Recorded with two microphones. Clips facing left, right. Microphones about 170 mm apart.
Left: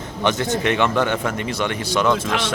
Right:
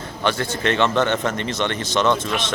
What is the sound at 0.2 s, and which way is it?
Speech, 20° left (ahead or behind).